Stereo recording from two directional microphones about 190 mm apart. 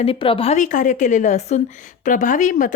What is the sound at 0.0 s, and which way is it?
A woman's voice, 30° left (ahead or behind).